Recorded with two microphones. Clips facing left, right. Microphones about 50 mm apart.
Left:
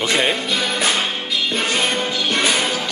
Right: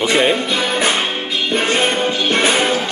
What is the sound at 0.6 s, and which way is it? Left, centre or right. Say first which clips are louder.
Music: right 3 dB; right.